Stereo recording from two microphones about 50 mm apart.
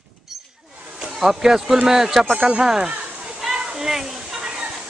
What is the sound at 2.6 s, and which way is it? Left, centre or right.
Speech, centre.